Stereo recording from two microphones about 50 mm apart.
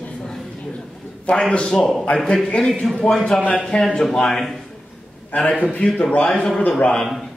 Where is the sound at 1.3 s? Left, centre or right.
Left.